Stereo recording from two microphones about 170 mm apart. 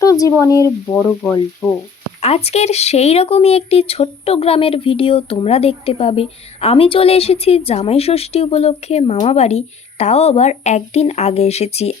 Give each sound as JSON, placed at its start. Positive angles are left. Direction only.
{"t": 0.0, "sound": "frying", "side_deg": 20}
{"t": 2.2, "sound": "speech", "side_deg": 35}